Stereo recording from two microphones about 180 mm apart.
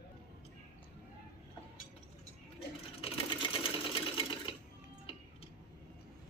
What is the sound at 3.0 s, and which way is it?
Sewing machine, 30° left (ahead or behind).